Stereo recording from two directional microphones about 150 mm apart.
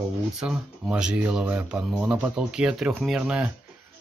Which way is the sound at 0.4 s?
5° right (ahead or behind).